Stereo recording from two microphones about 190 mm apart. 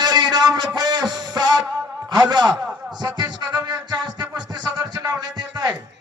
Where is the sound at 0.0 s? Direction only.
20° right (ahead or behind).